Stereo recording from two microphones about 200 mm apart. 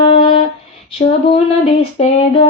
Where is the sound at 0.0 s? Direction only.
25° left (ahead or behind).